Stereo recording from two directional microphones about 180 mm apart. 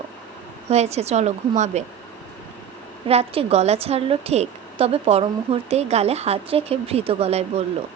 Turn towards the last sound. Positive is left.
turn(degrees=-35)  # may be behind; listen again after turning